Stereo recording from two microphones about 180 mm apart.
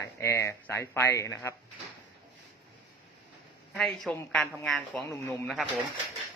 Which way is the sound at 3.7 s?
5° left (ahead or behind).